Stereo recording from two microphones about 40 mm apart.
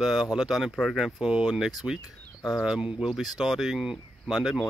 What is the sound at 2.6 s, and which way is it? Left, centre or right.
Speech, centre.